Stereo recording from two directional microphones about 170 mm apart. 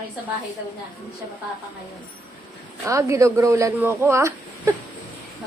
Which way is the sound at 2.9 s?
15° right (ahead or behind).